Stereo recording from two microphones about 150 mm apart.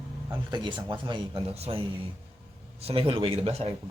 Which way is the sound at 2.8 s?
35° right (ahead or behind).